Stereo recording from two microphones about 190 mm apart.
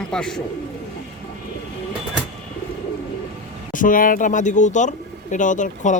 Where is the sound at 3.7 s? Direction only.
45° left (ahead or behind).